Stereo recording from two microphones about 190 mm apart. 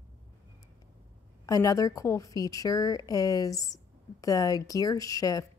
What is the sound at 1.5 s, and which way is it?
A woman's voice, 20° left (ahead or behind).